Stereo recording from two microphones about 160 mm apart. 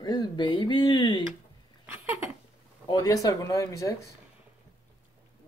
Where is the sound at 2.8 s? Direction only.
25° left (ahead or behind).